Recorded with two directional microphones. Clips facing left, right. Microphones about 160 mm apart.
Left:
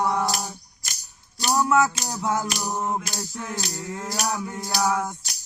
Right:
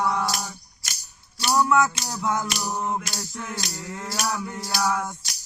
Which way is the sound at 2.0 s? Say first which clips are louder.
Even; 20° left (ahead or behind).